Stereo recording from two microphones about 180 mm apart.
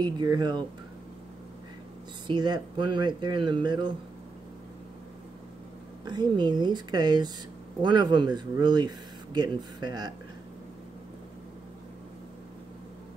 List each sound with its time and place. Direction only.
0.0 s speech: 25° right (ahead or behind)
2.2 s speech: 25° right (ahead or behind)
6.0 s speech: 25° right (ahead or behind)